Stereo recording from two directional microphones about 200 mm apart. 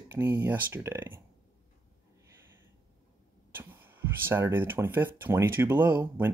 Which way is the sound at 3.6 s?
10° right (ahead or behind).